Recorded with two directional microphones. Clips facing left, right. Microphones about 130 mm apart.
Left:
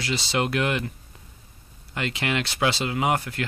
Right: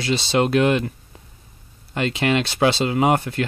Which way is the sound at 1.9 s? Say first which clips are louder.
Right 7 dB; 25° right (ahead or behind).